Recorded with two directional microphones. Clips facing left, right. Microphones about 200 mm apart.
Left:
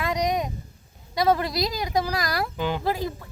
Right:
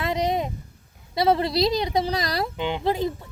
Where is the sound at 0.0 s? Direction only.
25° right (ahead or behind).